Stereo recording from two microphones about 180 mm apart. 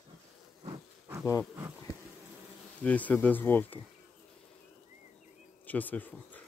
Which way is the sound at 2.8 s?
10° left (ahead or behind).